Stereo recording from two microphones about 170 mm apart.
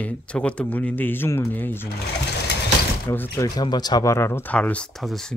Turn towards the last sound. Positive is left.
turn(degrees=0)  # may be behind; listen again after turning